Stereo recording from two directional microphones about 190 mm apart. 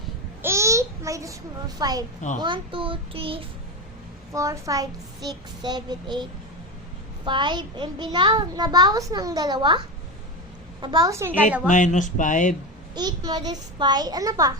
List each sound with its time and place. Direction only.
0.4 s a child's voice: 15° right (ahead or behind)
4.3 s a child's voice: 15° right (ahead or behind)
7.3 s a child's voice: 25° right (ahead or behind)
11.7 s speech: 40° left (ahead or behind)
12.9 s a child's voice: 20° right (ahead or behind)